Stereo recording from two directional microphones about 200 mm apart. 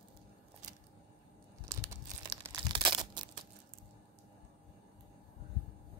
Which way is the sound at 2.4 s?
20° right (ahead or behind).